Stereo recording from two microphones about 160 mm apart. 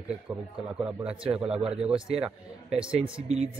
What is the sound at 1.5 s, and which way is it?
Speech, 5° right (ahead or behind).